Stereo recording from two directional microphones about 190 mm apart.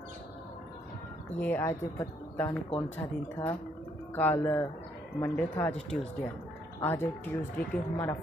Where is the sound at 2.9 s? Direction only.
10° left (ahead or behind).